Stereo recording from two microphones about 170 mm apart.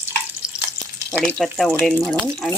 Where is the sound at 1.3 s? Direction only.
Centre (ahead or behind).